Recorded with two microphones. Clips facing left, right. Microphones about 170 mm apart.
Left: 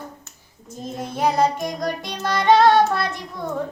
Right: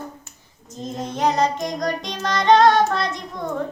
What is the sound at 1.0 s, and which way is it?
Child singing, 5° left (ahead or behind).